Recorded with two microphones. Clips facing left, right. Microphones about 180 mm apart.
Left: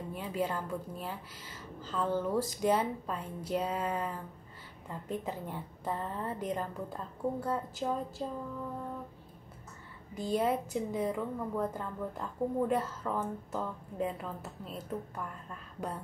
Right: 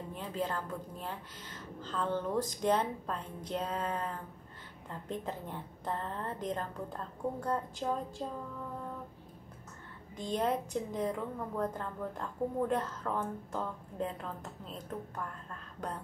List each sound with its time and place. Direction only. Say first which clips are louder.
0.1 s a woman's voice: left 2 dB; 10° left (ahead or behind)
10.1 s a woman's voice: left 2 dB; 5° left (ahead or behind)